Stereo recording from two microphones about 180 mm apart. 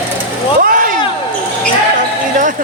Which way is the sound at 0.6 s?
50° right (ahead or behind).